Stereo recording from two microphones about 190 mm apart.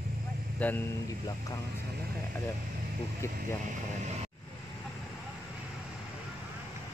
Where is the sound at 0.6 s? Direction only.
5° left (ahead or behind).